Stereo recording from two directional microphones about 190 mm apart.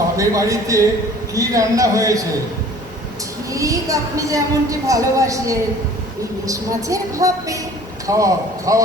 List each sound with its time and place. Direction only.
0.2 s speech: 15° right (ahead or behind)
3.5 s speech: 15° right (ahead or behind)